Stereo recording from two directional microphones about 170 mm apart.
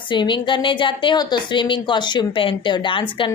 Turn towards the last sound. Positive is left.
turn(degrees=30)  # may be behind; listen again after turning